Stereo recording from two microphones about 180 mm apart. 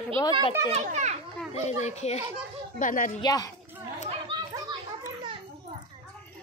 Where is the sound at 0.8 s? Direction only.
40° right (ahead or behind).